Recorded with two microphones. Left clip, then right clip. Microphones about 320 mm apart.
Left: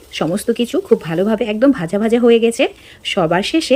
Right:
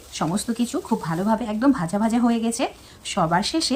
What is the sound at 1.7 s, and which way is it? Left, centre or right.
Speech, centre.